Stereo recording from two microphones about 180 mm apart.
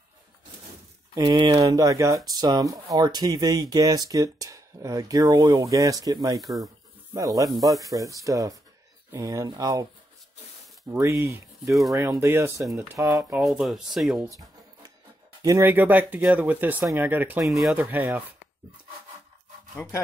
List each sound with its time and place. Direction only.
1.1 s speech: 25° right (ahead or behind)
10.9 s speech: 15° right (ahead or behind)
13.4 s speech: centre (ahead or behind)
15.4 s speech: 15° right (ahead or behind)
19.7 s speech: 15° left (ahead or behind)